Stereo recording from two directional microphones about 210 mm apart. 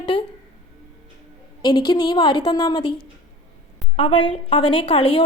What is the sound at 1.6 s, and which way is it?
A woman's voice, 20° left (ahead or behind).